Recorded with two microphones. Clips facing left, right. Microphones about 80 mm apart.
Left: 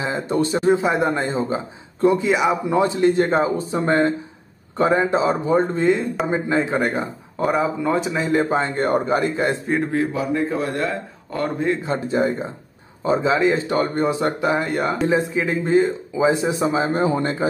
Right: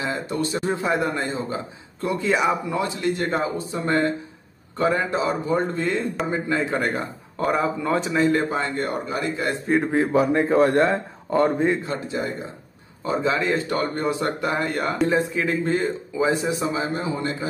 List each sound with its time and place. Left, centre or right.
0.0 s speech: left
2.2 s a man's voice: centre
2.6 s speech: left
5.9 s speech: centre
6.3 s a man's voice: left; by 8.4 s centre
8.4 s speech: left
8.8 s a man's voice: left
9.7 s speech: centre
10.1 s speech: right
11.3 s speech: right
12.1 s speech: left
13.0 s speech: left
14.6 s a man's voice: centre; by 17.0 s left
17.0 s a man's voice: left